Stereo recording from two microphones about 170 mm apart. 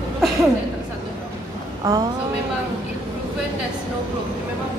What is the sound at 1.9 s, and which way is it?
Speech, 20° right (ahead or behind).